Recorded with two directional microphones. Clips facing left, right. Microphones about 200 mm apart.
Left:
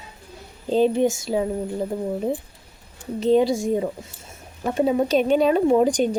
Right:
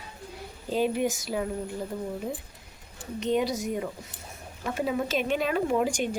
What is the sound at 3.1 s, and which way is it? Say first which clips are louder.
A woman's voice: left 8 dB; 35° left (ahead or behind).